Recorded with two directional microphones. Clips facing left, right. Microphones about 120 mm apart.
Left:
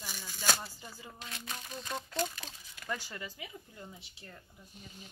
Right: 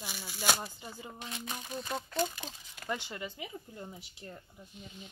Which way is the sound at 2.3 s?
20° right (ahead or behind).